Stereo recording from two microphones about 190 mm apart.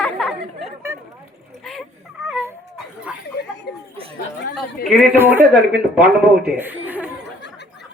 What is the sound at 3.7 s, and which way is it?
Chatter, 60° left (ahead or behind).